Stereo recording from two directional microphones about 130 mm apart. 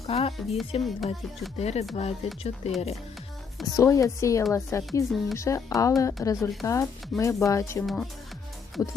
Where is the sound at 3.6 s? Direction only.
25° left (ahead or behind).